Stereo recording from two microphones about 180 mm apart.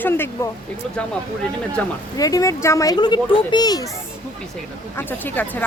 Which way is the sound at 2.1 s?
20° left (ahead or behind).